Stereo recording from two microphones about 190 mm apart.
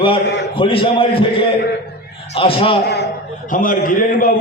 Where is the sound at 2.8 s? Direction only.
60° left (ahead or behind).